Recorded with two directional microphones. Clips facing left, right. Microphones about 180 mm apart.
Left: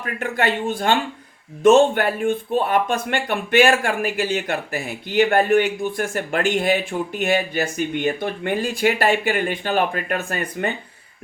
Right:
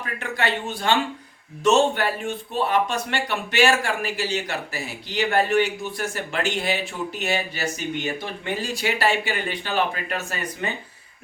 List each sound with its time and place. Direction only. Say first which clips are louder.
0.0 s speech: left 4 dB; 50° left (ahead or behind)